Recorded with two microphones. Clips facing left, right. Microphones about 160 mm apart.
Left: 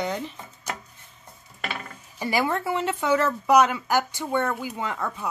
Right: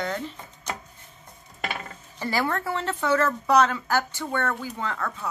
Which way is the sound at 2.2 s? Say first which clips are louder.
Left 2 dB; 15° left (ahead or behind).